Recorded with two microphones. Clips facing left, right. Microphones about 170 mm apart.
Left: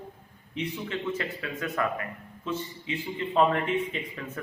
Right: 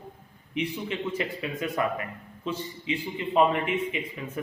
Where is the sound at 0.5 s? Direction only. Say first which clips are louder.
Right 2 dB; 20° right (ahead or behind).